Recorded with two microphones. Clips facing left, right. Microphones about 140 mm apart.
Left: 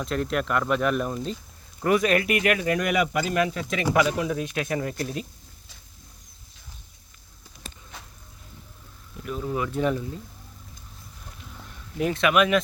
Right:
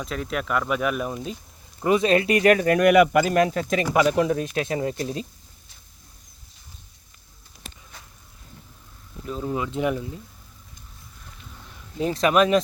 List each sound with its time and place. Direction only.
0.0 s speech: centre (ahead or behind)
1.8 s speech: 25° right (ahead or behind)
2.6 s speech: 55° right (ahead or behind); by 5.2 s 25° right (ahead or behind)
9.2 s speech: 25° right (ahead or behind)
11.9 s speech: 35° right (ahead or behind)